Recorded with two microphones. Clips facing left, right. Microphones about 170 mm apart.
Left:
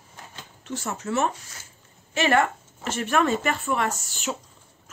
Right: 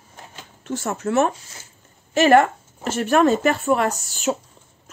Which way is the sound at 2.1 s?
40° right (ahead or behind).